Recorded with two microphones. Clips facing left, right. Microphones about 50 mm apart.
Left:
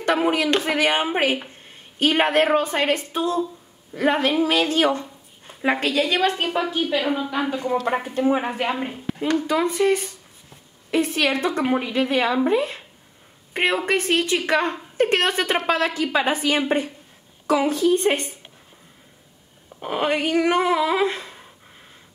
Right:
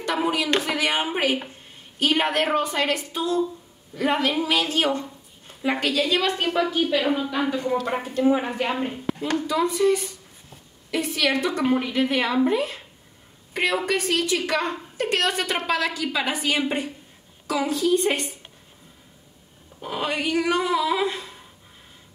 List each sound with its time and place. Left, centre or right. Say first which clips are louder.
0.0 s a woman's voice: left 4 dB; left
6.6 s a woman's voice: right 2 dB; centre
7.9 s a woman's voice: right 1 dB; left
9.5 s a woman's voice: even; left
13.5 s a sound: left 2 dB; left
13.8 s a woman's voice: left 2 dB; left
19.8 s a woman's voice: left 4 dB; left